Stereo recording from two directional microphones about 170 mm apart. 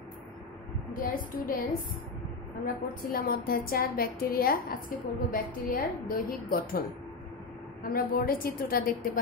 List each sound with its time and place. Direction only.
1.0 s a woman's voice: 55° left (ahead or behind)
2.6 s a woman's voice: 55° left (ahead or behind)
7.9 s a woman's voice: 60° left (ahead or behind)